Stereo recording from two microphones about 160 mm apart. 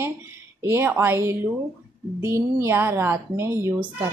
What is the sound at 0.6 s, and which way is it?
A woman's voice, 15° right (ahead or behind).